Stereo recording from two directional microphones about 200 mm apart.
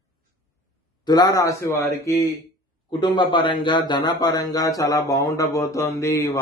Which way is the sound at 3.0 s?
20° left (ahead or behind).